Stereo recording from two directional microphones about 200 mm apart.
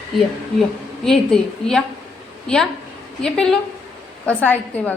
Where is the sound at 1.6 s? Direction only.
5° left (ahead or behind).